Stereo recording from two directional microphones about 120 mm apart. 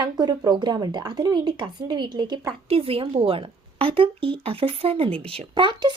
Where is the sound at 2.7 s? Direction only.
55° right (ahead or behind).